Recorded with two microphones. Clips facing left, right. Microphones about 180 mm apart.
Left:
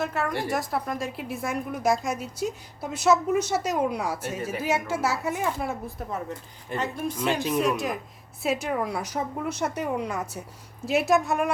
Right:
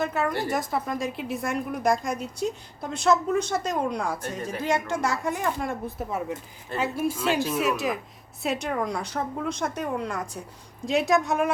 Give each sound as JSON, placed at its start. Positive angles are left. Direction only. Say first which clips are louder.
{"t": 0.0, "sound": "a woman's voice", "louder": "right 2 dB", "side_deg": 0}
{"t": 7.2, "sound": "speech", "louder": "left 3 dB", "side_deg": 20}
{"t": 7.6, "sound": "a woman's voice", "louder": "even", "side_deg": 0}